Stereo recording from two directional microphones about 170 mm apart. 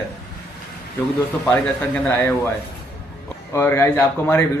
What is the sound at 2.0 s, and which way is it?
Speech, 15° left (ahead or behind).